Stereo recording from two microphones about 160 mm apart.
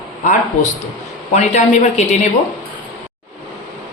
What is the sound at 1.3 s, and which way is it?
Speech, 45° left (ahead or behind).